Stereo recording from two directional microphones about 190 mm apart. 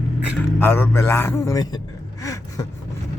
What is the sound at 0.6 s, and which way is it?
A man's voice, 10° left (ahead or behind).